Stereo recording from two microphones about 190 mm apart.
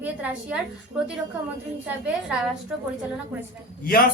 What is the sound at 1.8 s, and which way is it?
Speech, 5° right (ahead or behind).